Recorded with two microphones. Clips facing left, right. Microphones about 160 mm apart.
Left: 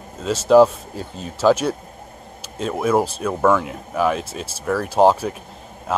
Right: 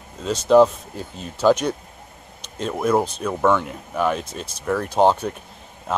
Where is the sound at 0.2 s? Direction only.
5° left (ahead or behind).